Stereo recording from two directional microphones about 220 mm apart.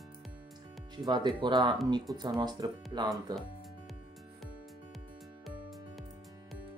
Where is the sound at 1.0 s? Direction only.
20° right (ahead or behind).